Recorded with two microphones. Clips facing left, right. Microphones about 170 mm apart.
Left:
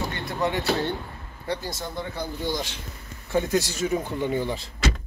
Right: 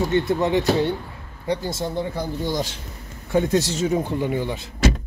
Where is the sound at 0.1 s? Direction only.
25° right (ahead or behind).